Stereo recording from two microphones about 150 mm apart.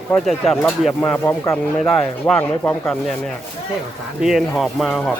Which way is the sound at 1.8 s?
5° left (ahead or behind).